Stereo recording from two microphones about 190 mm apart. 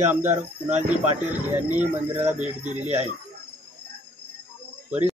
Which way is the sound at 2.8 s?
35° right (ahead or behind).